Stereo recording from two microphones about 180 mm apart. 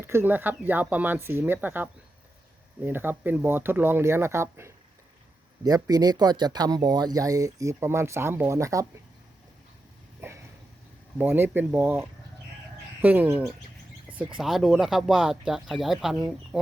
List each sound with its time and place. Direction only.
0.0 s speech: 15° right (ahead or behind)
10.2 s a sound: 10° right (ahead or behind)
11.2 s speech: 10° right (ahead or behind)